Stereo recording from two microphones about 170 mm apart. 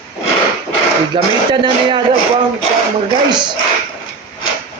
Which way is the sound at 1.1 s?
30° right (ahead or behind).